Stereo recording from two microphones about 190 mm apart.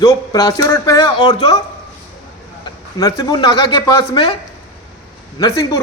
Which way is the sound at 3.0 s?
20° left (ahead or behind).